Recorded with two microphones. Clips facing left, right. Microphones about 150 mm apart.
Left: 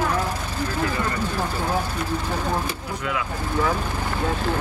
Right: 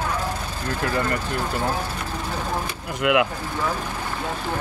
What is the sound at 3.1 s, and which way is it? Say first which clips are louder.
Speech: right 9 dB; 75° right (ahead or behind).